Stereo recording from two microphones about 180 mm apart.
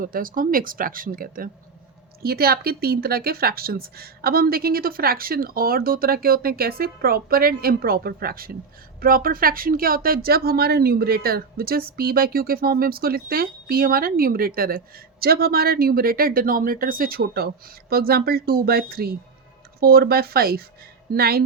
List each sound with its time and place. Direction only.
0.0 s a woman's voice: 50° right (ahead or behind)